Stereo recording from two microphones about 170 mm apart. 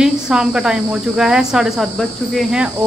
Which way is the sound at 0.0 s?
5° right (ahead or behind).